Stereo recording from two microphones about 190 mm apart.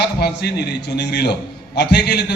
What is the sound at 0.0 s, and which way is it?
A man's voice, 60° left (ahead or behind).